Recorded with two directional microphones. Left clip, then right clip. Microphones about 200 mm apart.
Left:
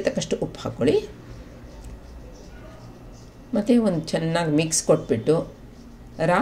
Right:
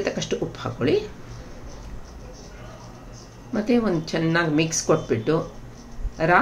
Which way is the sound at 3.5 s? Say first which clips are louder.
Left 1 dB; 35° left (ahead or behind).